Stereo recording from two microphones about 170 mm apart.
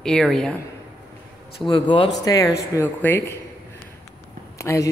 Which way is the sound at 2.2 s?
20° left (ahead or behind).